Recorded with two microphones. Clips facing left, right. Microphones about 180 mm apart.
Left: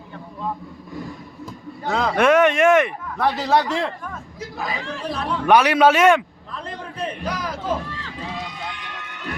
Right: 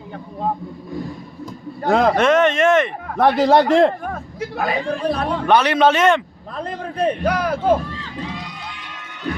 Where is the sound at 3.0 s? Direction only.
55° right (ahead or behind).